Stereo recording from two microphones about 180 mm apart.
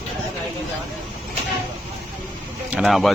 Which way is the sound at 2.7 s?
Centre (ahead or behind).